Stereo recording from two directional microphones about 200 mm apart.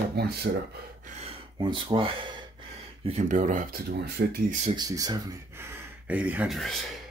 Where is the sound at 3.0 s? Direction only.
35° right (ahead or behind).